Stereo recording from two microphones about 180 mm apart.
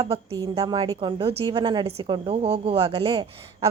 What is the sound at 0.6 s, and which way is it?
A woman's voice, 20° right (ahead or behind).